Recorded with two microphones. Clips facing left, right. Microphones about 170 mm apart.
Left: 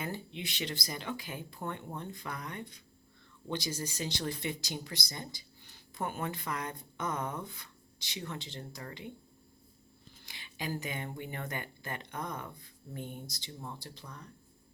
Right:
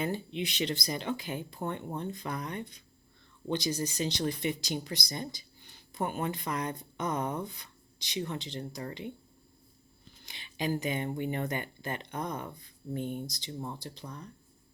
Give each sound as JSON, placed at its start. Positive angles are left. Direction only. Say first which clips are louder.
{"t": 0.0, "sound": "speech", "louder": "right 6 dB", "side_deg": -20}
{"t": 10.2, "sound": "speech", "louder": "right 6 dB", "side_deg": -20}